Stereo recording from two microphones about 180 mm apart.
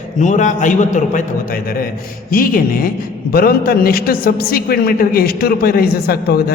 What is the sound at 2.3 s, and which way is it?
A man's voice, 55° left (ahead or behind).